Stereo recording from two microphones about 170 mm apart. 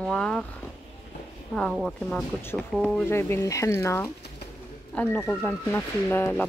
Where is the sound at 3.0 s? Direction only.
15° left (ahead or behind).